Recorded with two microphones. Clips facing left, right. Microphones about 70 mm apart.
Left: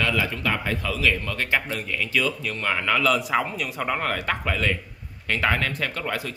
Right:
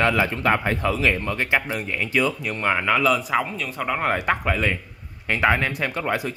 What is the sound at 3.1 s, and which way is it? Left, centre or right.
Speech, centre.